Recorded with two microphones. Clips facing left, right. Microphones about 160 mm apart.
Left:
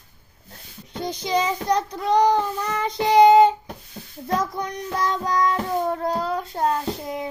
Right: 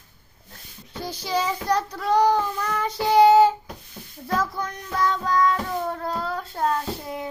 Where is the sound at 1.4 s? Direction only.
15° left (ahead or behind).